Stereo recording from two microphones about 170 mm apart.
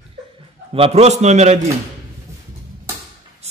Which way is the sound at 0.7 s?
35° right (ahead or behind).